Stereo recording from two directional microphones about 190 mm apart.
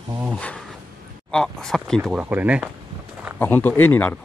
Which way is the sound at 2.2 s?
10° right (ahead or behind).